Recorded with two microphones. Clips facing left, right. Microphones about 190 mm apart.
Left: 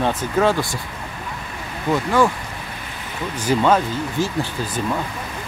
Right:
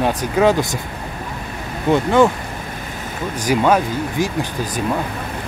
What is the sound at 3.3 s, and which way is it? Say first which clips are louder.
Speech: right 1 dB; 10° right (ahead or behind).